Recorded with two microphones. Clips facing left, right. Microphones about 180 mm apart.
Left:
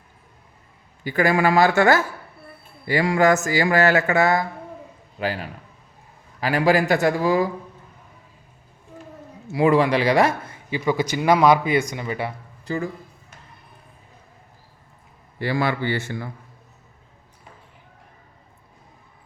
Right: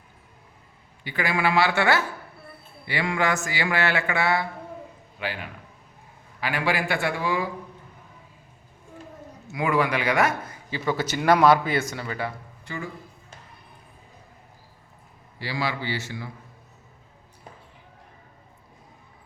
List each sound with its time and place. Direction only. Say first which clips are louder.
1.0 s speech: left 6 dB; 45° left (ahead or behind)
9.5 s speech: left 6 dB; 30° left (ahead or behind)
10.7 s speech: left 4 dB; 15° left (ahead or behind)
12.6 s speech: left 8 dB; 35° left (ahead or behind)
15.4 s speech: left 6 dB; 55° left (ahead or behind)